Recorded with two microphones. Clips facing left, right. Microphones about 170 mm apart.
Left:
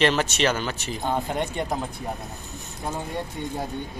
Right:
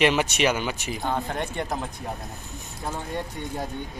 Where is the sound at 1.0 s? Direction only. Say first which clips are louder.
Left 2 dB; 15° left (ahead or behind).